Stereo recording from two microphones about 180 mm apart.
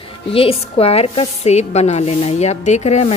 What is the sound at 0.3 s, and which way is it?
A woman's voice, 30° left (ahead or behind).